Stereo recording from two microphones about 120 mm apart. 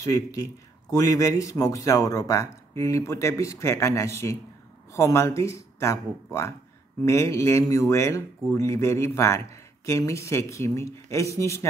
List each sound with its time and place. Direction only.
0.0 s a man's voice: 30° left (ahead or behind)